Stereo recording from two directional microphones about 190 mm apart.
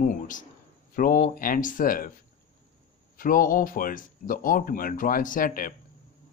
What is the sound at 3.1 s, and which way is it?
Speech, 45° left (ahead or behind).